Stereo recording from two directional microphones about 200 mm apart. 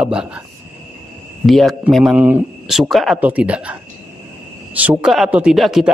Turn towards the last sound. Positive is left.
turn(degrees=0)  # may be behind; listen again after turning